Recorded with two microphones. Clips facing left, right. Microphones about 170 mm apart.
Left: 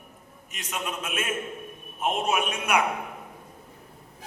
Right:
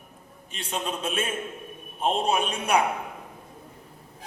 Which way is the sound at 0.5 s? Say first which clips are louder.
Right 2 dB; 30° right (ahead or behind).